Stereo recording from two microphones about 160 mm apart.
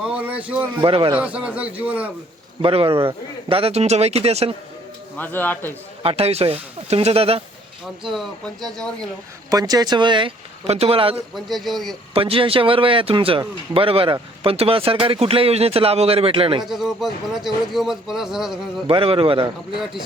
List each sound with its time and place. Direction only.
0.1 s a man's voice: 10° right (ahead or behind)
0.4 s speech: 35° right (ahead or behind)
1.1 s a man's voice: 10° right (ahead or behind)
2.6 s speech: 35° right (ahead or behind)
5.1 s a man's voice: 10° left (ahead or behind)
6.0 s speech: 40° right (ahead or behind)
8.0 s speech: centre (ahead or behind)
9.5 s speech: 25° right (ahead or behind)
11.3 s speech: centre (ahead or behind)
12.1 s speech: 35° right (ahead or behind)
16.6 s speech: centre (ahead or behind)
18.9 s speech: 35° right (ahead or behind)
19.7 s speech: centre (ahead or behind)